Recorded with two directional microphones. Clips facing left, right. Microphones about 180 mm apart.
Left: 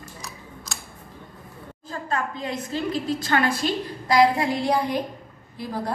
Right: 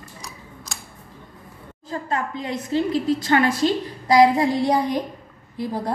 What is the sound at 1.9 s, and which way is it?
A woman's voice, 20° right (ahead or behind).